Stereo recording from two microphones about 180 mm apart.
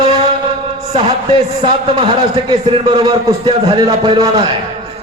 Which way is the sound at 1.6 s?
30° right (ahead or behind).